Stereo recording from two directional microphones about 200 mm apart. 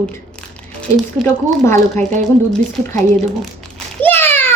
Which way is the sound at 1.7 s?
35° right (ahead or behind).